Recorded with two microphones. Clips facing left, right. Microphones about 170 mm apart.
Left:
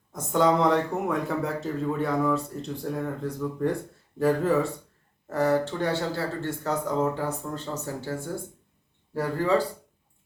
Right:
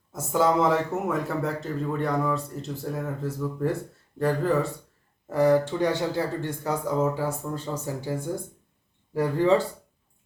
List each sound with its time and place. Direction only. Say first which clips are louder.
0.1 s speech: even; 5° right (ahead or behind)
5.3 s speech: right 3 dB; 10° right (ahead or behind)